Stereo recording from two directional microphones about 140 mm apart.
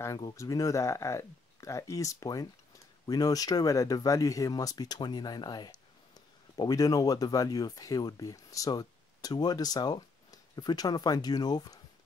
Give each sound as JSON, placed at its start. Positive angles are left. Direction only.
{"t": 0.0, "sound": "speech", "side_deg": 25}